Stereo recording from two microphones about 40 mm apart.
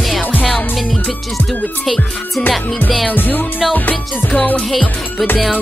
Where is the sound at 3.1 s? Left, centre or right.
Left.